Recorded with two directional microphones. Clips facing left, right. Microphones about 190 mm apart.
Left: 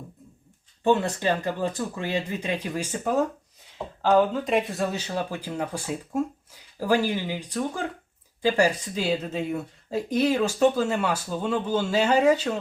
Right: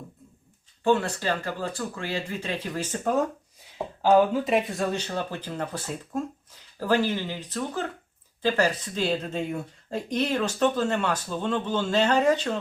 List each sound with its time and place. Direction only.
0.9 s speech: 20° left (ahead or behind)